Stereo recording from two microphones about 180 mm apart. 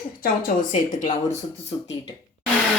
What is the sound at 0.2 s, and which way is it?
Speech, 55° left (ahead or behind).